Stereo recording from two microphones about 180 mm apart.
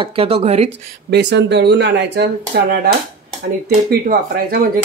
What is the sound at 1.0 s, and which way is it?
Speech, 70° right (ahead or behind).